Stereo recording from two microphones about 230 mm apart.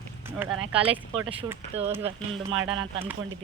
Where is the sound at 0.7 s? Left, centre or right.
Right.